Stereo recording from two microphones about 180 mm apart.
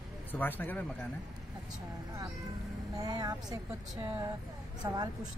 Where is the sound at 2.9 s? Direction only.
20° right (ahead or behind).